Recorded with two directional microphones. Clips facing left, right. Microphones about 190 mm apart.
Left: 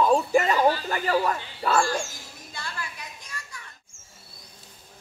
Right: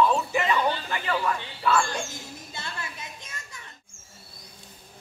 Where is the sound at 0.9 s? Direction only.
40° left (ahead or behind).